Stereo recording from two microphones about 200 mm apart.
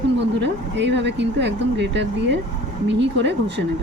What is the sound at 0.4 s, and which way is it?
Speech, 60° right (ahead or behind).